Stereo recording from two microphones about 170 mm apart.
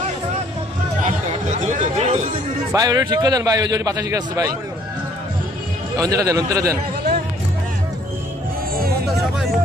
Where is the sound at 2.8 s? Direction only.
25° right (ahead or behind).